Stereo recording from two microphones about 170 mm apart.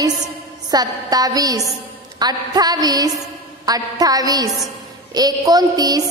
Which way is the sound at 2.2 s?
25° right (ahead or behind).